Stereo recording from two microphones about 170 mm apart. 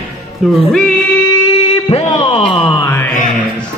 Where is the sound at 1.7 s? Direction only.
35° left (ahead or behind).